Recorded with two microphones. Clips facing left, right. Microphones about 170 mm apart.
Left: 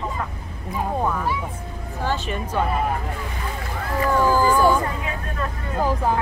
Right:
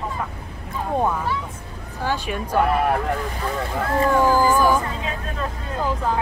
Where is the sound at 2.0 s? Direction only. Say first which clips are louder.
Right 1 dB; 10° right (ahead or behind).